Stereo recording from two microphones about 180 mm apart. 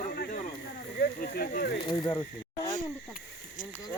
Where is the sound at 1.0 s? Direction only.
55° left (ahead or behind).